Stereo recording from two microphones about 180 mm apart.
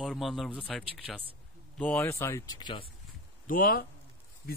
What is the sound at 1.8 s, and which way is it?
Speech, 10° left (ahead or behind).